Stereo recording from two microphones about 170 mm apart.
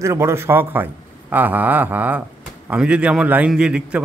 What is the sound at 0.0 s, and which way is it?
A man's voice, 15° right (ahead or behind).